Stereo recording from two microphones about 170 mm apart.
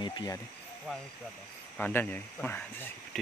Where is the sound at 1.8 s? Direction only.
10° left (ahead or behind).